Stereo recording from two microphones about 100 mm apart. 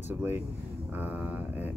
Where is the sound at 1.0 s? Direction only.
15° right (ahead or behind).